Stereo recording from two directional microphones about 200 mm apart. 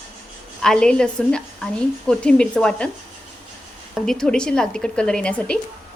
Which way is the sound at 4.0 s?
Centre (ahead or behind).